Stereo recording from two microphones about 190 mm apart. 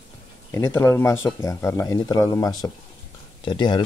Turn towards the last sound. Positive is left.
turn(degrees=25)  # may be behind; listen again after turning